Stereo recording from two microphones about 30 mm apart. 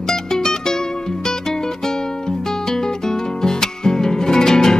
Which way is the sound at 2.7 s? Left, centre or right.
Centre.